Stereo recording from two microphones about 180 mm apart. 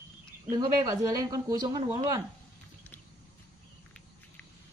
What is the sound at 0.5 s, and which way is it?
Speech, 20° right (ahead or behind).